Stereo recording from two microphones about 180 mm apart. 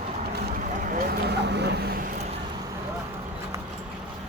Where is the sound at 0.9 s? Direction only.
55° right (ahead or behind).